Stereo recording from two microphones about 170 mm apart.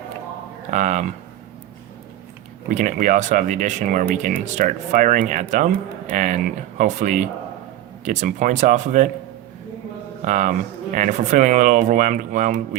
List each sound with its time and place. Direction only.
0.7 s speech: 45° right (ahead or behind)
2.6 s speech: 50° right (ahead or behind)
10.2 s speech: 50° right (ahead or behind)